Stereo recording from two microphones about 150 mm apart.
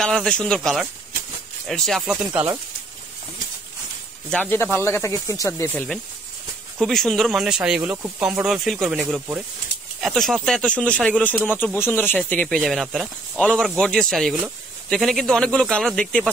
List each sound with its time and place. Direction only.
0.0 s speech: 5° left (ahead or behind)
2.3 s speech: 10° right (ahead or behind)
4.3 s speech: 10° left (ahead or behind)
6.8 s speech: centre (ahead or behind)
9.0 s speech: 10° right (ahead or behind)
9.9 s speech: centre (ahead or behind)